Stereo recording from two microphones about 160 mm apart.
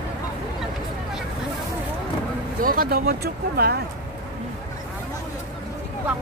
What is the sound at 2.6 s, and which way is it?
Speech, 65° right (ahead or behind).